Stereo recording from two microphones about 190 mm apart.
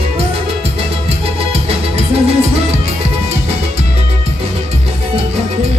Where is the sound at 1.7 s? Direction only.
30° right (ahead or behind).